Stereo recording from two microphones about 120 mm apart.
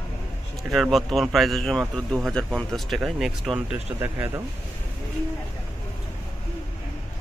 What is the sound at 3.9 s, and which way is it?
Speech, 20° right (ahead or behind).